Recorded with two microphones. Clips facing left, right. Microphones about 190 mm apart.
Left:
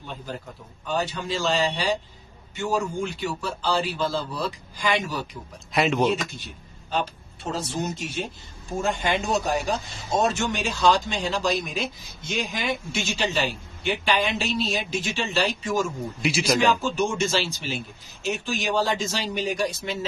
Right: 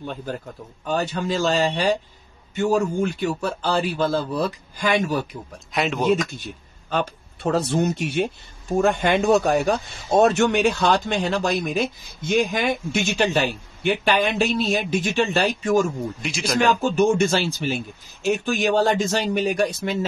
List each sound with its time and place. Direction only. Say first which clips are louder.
0.0 s a man's voice: right 5 dB; 50° right (ahead or behind)
5.7 s speech: right 1 dB; centre (ahead or behind)
6.9 s speech: right 3 dB; 60° right (ahead or behind)
16.2 s speech: left 3 dB; 5° left (ahead or behind)
16.5 s speech: right 7 dB; 55° right (ahead or behind)